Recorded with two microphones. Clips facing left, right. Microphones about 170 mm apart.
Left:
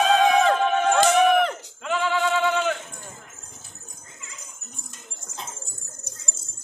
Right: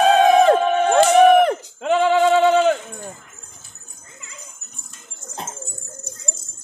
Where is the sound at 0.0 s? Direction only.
45° right (ahead or behind).